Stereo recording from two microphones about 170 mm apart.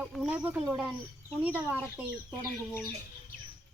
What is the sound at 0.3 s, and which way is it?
Speech, 10° right (ahead or behind).